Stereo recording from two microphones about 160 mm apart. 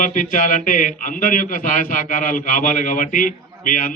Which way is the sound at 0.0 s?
55° left (ahead or behind).